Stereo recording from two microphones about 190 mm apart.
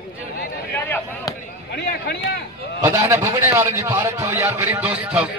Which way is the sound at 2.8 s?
15° right (ahead or behind).